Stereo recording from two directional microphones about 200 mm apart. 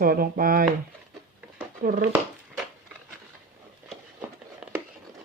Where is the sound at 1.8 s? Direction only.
45° right (ahead or behind).